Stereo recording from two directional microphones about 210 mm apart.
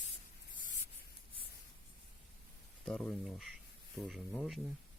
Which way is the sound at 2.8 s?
5° left (ahead or behind).